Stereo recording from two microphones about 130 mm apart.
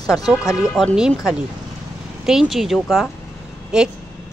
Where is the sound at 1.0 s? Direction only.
5° right (ahead or behind).